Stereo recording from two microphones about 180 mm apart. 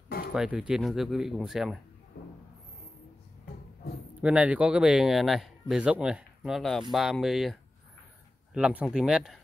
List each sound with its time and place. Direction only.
0.3 s speech: 5° right (ahead or behind)
2.1 s a sound: 60° left (ahead or behind)
4.2 s speech: 5° right (ahead or behind)
8.5 s speech: 5° right (ahead or behind)